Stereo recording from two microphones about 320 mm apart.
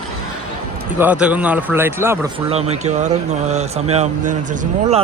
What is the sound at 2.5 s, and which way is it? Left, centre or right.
Speech, centre.